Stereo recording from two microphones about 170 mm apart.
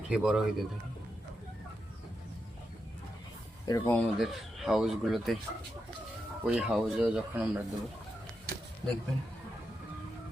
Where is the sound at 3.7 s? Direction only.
20° left (ahead or behind).